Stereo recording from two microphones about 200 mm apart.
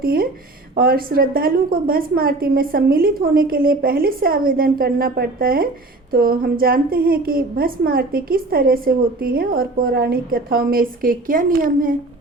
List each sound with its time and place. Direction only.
0.0 s a woman's voice: 45° right (ahead or behind)